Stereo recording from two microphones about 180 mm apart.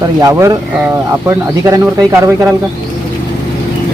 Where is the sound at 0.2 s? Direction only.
15° right (ahead or behind).